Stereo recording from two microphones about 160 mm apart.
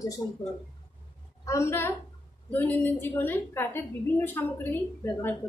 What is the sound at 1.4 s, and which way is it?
A woman's voice, 15° left (ahead or behind).